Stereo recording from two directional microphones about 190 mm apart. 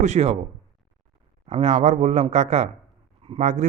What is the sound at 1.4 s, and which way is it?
A man's voice, 35° right (ahead or behind).